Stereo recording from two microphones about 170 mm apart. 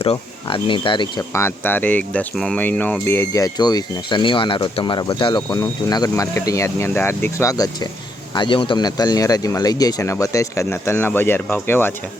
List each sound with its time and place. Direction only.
0.0 s speech: 35° left (ahead or behind)
1.3 s speech: 15° left (ahead or behind)